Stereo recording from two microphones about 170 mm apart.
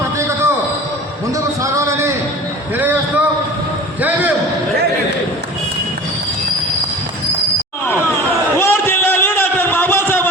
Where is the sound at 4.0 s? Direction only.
10° right (ahead or behind).